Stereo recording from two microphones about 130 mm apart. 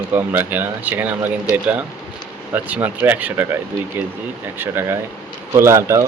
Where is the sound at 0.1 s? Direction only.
15° right (ahead or behind).